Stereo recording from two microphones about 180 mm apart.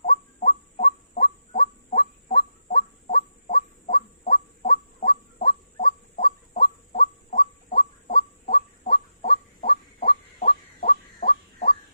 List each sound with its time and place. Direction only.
0.0 s fowl: 45° left (ahead or behind)